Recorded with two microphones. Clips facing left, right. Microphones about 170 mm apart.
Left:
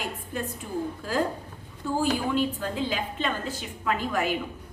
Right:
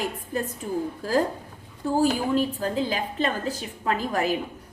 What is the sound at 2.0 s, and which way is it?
A woman's voice, 40° right (ahead or behind).